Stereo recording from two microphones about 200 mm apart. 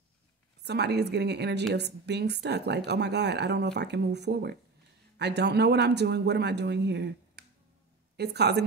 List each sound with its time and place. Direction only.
0.7 s a woman's voice: 55° right (ahead or behind)